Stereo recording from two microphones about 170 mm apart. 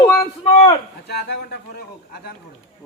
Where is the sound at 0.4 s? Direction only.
30° left (ahead or behind).